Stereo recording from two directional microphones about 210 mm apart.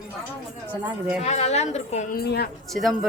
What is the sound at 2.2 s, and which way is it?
Speech, 50° left (ahead or behind).